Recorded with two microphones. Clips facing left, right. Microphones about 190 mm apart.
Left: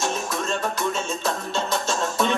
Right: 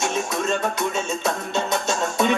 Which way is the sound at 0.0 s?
Centre (ahead or behind).